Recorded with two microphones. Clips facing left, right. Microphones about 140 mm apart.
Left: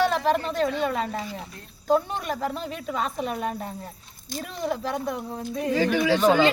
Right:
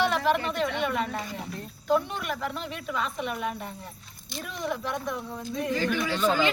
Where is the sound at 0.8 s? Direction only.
35° left (ahead or behind).